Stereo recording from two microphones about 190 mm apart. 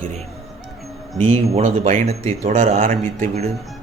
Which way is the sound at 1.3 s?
35° right (ahead or behind).